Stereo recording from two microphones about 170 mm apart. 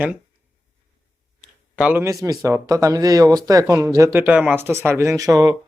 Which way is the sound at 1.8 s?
10° right (ahead or behind).